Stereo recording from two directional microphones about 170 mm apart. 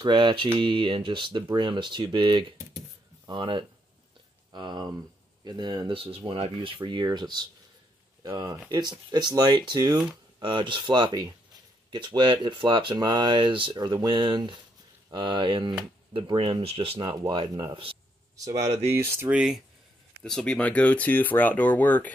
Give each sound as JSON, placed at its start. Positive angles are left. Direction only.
{"t": 0.0, "sound": "speech", "side_deg": -25}
{"t": 18.5, "sound": "speech", "side_deg": -40}
{"t": 18.9, "sound": "speech", "side_deg": -15}